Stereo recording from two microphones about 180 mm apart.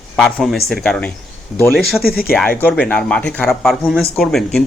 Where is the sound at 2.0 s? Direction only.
55° left (ahead or behind).